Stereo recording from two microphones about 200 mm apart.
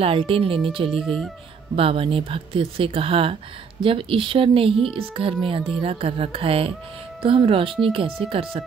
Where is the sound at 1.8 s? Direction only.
25° right (ahead or behind).